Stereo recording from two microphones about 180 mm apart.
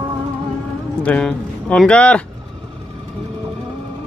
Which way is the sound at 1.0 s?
5° left (ahead or behind).